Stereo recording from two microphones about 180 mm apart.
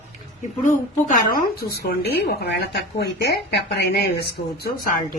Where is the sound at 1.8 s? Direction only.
65° left (ahead or behind).